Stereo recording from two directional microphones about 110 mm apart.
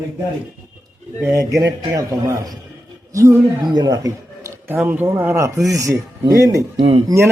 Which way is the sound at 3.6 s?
40° right (ahead or behind).